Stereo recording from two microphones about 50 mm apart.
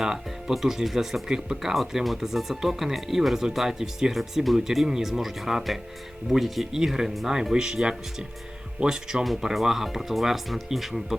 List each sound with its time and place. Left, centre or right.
0.0 s speech: centre